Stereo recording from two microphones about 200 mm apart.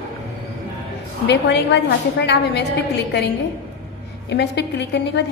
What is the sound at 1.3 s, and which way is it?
A woman's voice, 60° left (ahead or behind).